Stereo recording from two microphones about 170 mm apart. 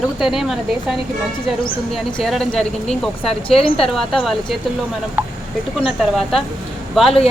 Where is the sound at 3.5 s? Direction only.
35° left (ahead or behind).